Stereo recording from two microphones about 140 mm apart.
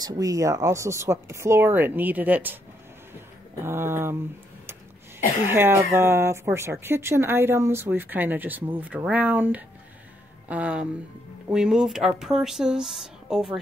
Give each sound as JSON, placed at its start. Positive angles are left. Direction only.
{"t": 0.0, "sound": "speech", "side_deg": -25}
{"t": 3.6, "sound": "speech", "side_deg": -15}
{"t": 5.5, "sound": "speech", "side_deg": -15}